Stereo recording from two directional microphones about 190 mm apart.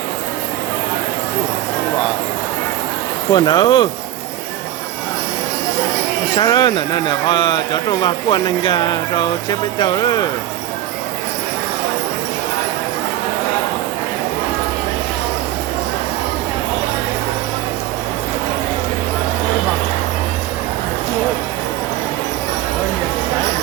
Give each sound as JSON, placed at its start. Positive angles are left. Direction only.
{"t": 3.3, "sound": "speech", "side_deg": 20}
{"t": 6.3, "sound": "speech", "side_deg": 20}